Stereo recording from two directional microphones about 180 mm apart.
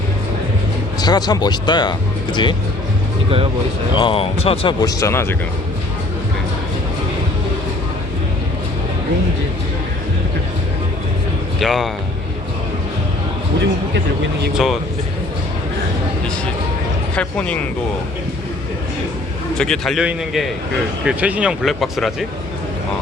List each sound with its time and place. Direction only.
0.9 s speech: 20° left (ahead or behind)
3.9 s speech: 30° left (ahead or behind); by 5.4 s 15° left (ahead or behind)
11.6 s speech: centre (ahead or behind)
14.5 s speech: centre (ahead or behind)
17.2 s speech: 5° left (ahead or behind)
19.5 s speech: 5° left (ahead or behind)